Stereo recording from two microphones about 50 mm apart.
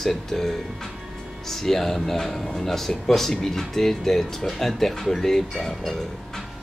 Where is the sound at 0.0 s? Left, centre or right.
Centre.